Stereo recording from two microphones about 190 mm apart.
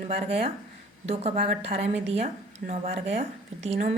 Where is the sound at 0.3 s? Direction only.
30° right (ahead or behind).